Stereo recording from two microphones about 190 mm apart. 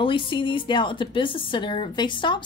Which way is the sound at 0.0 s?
25° left (ahead or behind).